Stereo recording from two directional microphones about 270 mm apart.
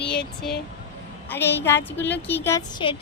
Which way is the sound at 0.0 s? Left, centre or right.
Left.